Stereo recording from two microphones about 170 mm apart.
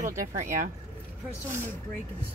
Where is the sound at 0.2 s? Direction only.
45° right (ahead or behind).